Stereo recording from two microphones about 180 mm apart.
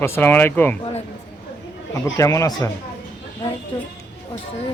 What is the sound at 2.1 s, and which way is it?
Speech, 15° left (ahead or behind).